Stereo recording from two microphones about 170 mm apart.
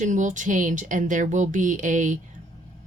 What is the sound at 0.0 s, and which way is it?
Speech, 45° right (ahead or behind).